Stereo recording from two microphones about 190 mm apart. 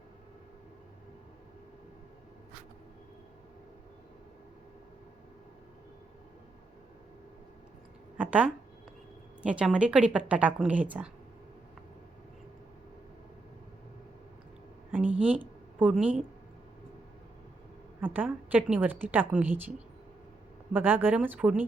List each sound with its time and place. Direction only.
8.2 s a woman's voice: 5° right (ahead or behind)
14.9 s a woman's voice: 10° right (ahead or behind)
18.0 s a woman's voice: 10° right (ahead or behind)
20.7 s a woman's voice: 10° right (ahead or behind)